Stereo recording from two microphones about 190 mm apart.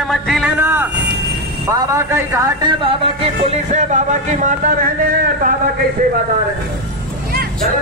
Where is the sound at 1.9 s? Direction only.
15° right (ahead or behind).